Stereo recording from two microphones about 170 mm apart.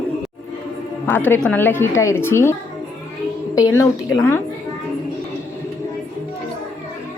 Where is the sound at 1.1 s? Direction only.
10° left (ahead or behind).